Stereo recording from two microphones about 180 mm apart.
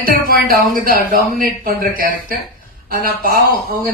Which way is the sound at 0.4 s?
50° right (ahead or behind).